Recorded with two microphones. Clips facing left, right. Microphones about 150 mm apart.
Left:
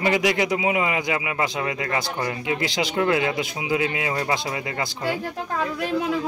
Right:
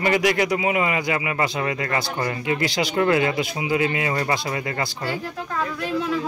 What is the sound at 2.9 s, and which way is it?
Speech, 5° left (ahead or behind).